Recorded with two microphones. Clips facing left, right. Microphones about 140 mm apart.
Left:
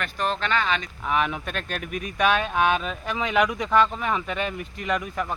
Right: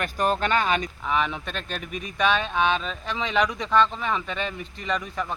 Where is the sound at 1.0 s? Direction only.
5° left (ahead or behind).